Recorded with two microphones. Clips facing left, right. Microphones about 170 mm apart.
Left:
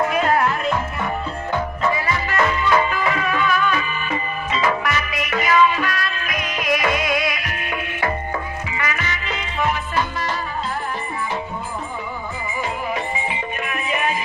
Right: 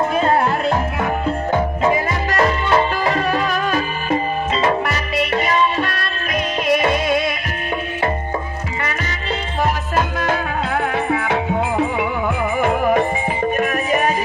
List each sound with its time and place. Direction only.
0.2 s music: 30° right (ahead or behind)
1.9 s music: 50° right (ahead or behind); by 7.3 s 30° right (ahead or behind)
9.9 s music: 55° right (ahead or behind); by 12.1 s 75° right (ahead or behind)
12.5 s music: 55° right (ahead or behind)
13.6 s music: 45° right (ahead or behind)